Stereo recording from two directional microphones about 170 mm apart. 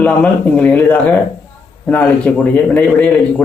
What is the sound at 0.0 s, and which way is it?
Speech, 10° left (ahead or behind).